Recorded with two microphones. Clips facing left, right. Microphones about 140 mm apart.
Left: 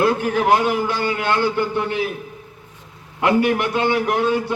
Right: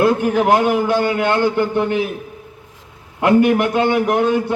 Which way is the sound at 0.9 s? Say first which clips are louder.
Right 6 dB; 50° right (ahead or behind).